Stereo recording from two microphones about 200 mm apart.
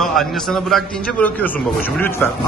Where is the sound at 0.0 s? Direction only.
Centre (ahead or behind).